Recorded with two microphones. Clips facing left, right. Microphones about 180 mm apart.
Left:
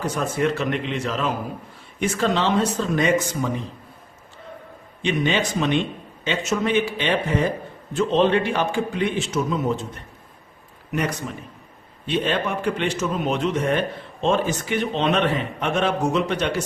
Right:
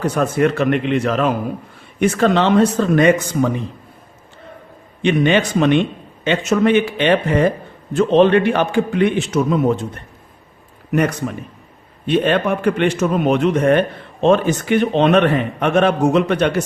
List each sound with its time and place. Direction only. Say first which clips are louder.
0.0 s a man's voice: right 6 dB; 60° right (ahead or behind)
5.0 s a man's voice: right 7 dB; 60° right (ahead or behind)